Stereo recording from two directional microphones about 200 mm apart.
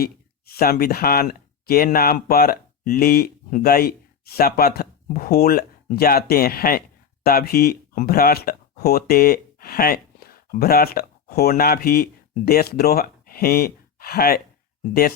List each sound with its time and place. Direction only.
0.0 s speech: 50° left (ahead or behind)